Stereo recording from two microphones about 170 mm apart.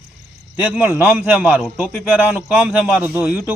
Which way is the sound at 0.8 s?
10° right (ahead or behind).